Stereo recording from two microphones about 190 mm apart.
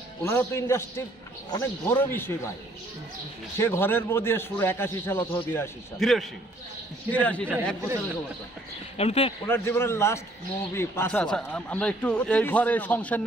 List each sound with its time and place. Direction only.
0.2 s speech: 15° left (ahead or behind)
3.5 s speech: 10° left (ahead or behind)
5.9 s a man's voice: centre (ahead or behind)
8.9 s speech: 30° left (ahead or behind)
9.5 s speech: 15° left (ahead or behind)